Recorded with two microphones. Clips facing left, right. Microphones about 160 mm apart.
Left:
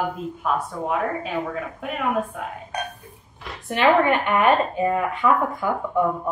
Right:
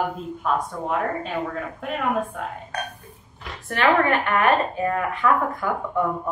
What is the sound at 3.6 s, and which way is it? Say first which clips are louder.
A woman's voice: left 2 dB; 15° left (ahead or behind).